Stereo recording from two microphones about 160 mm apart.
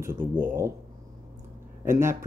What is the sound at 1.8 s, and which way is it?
Speech, 15° right (ahead or behind).